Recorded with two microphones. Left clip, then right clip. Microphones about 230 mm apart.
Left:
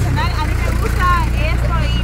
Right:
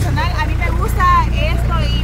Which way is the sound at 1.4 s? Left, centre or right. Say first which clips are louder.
Right 1 dB; centre.